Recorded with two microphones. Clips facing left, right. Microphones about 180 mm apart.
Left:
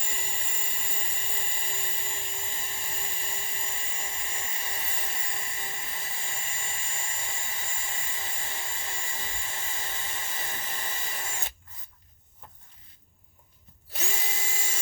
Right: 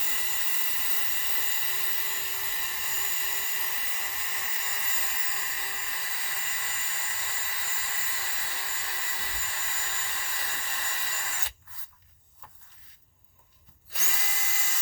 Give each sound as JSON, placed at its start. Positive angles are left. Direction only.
{"t": 0.0, "sound": "vacuum cleaner", "side_deg": 25}
{"t": 13.9, "sound": "drill", "side_deg": 25}